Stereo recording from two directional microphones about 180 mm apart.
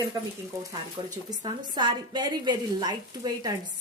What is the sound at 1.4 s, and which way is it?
A woman's voice, 25° right (ahead or behind).